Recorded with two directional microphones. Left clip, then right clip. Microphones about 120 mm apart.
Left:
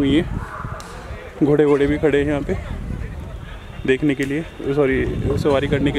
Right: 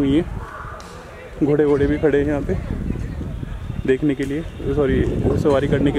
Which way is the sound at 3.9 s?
25° left (ahead or behind).